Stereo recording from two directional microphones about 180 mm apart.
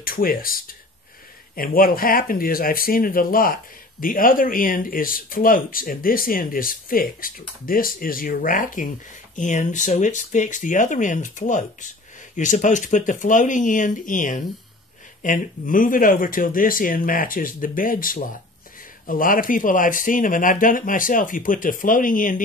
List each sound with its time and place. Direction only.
0.0 s speech: 50° left (ahead or behind)